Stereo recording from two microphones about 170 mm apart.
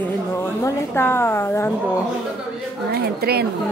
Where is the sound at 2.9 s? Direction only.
70° right (ahead or behind).